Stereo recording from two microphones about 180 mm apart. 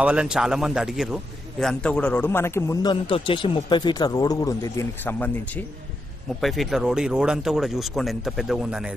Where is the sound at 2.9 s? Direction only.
30° left (ahead or behind); by 8.8 s 5° right (ahead or behind).